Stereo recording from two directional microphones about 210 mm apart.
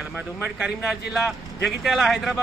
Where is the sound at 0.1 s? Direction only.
5° right (ahead or behind).